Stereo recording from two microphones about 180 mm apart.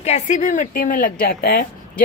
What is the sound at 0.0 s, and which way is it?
A woman's voice, 40° left (ahead or behind).